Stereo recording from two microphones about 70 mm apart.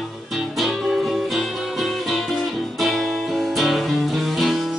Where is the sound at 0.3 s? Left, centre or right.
Centre.